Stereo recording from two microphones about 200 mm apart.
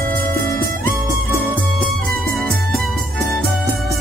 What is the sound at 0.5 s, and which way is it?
Music, 45° right (ahead or behind).